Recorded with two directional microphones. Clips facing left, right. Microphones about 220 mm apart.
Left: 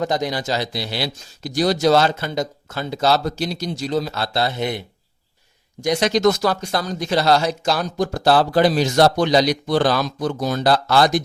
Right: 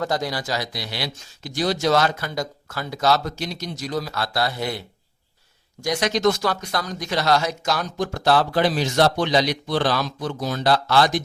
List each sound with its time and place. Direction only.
0.0 s a man's voice: 20° left (ahead or behind)
5.8 s speech: 25° left (ahead or behind)